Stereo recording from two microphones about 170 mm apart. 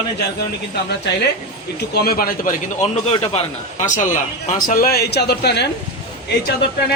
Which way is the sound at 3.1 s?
30° left (ahead or behind).